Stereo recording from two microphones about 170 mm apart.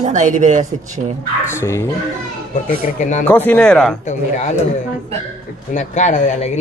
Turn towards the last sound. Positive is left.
turn(degrees=45)  # may be behind; listen again after turning